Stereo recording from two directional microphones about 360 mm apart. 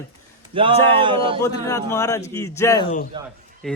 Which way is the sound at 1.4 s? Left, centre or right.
Centre.